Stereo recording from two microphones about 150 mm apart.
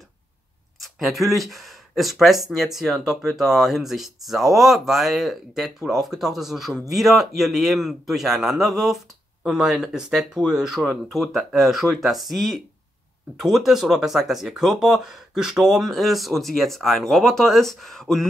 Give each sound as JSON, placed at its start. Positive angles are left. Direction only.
{"t": 0.7, "sound": "speech", "side_deg": 0}